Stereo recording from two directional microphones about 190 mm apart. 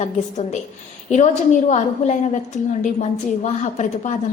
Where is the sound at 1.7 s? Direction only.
40° left (ahead or behind).